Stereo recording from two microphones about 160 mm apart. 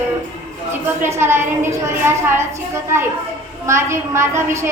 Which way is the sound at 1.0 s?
15° right (ahead or behind).